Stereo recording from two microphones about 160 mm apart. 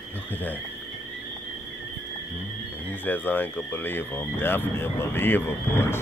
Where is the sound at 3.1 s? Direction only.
10° left (ahead or behind).